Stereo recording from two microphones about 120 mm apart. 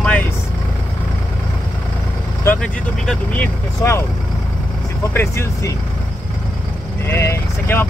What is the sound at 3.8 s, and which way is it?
Speech, 25° left (ahead or behind).